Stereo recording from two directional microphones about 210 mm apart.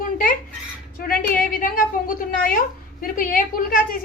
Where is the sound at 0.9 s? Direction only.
45° left (ahead or behind).